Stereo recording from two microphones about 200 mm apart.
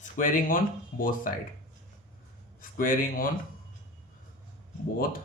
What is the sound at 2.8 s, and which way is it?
Speech, 45° left (ahead or behind).